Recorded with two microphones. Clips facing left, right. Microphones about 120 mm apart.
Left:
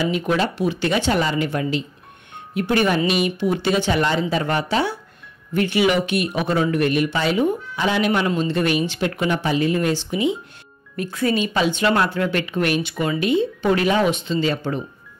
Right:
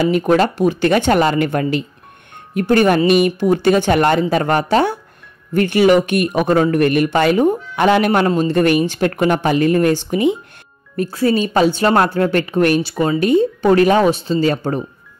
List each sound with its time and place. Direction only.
0.0 s speech: 50° right (ahead or behind)
2.5 s speech: 45° right (ahead or behind)
11.0 s a woman's voice: 35° right (ahead or behind)